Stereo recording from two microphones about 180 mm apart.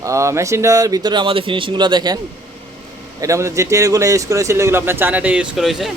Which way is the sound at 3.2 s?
15° right (ahead or behind).